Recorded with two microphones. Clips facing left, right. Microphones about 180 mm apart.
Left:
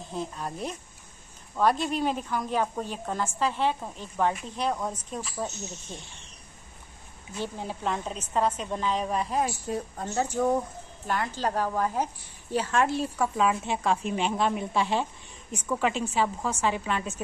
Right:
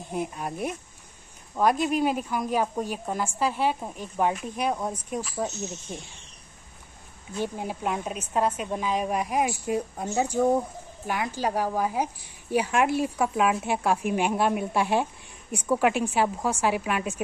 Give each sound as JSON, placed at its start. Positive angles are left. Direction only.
{"t": 0.1, "sound": "a woman's voice", "side_deg": -15}
{"t": 7.3, "sound": "a woman's voice", "side_deg": -15}